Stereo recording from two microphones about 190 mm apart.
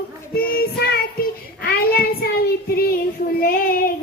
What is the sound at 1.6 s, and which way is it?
Child singing, 55° left (ahead or behind).